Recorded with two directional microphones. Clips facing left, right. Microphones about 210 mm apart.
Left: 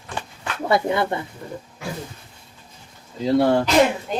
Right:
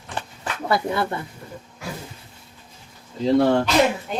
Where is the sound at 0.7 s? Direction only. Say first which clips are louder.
Left 3 dB; 20° left (ahead or behind).